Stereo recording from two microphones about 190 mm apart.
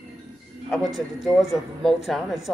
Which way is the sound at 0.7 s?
Centre (ahead or behind).